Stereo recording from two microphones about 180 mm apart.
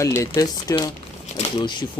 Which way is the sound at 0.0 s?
15° left (ahead or behind).